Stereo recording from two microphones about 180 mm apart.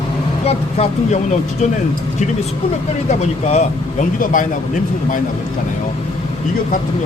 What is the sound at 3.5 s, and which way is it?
Speech, 40° left (ahead or behind).